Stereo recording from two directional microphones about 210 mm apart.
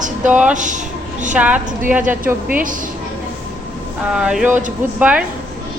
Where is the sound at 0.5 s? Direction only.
35° right (ahead or behind).